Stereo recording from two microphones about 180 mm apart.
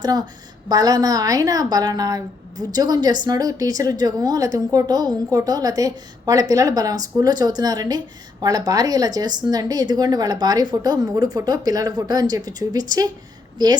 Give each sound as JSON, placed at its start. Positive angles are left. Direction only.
{"t": 0.0, "sound": "a woman's voice", "side_deg": -20}